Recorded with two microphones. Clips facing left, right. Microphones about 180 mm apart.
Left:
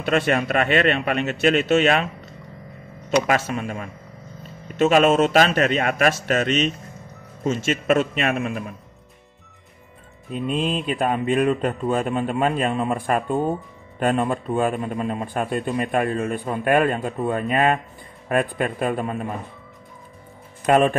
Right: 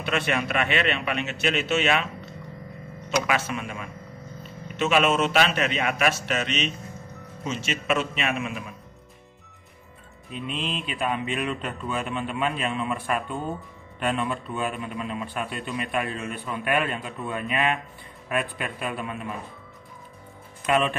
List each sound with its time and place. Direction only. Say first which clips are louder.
0.0 s speech: left 6 dB; 45° left (ahead or behind)
3.3 s speech: left 5 dB; 40° left (ahead or behind)
10.3 s speech: left 8 dB; 45° left (ahead or behind)
20.6 s speech: left 7 dB; 45° left (ahead or behind)